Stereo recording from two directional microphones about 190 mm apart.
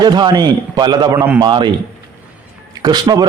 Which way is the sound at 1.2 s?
10° right (ahead or behind).